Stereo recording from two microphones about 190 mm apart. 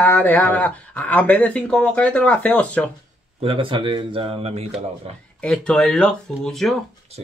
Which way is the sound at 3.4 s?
25° right (ahead or behind).